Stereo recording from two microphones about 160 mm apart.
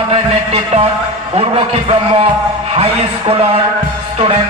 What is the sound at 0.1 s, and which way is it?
A man's voice, 40° right (ahead or behind).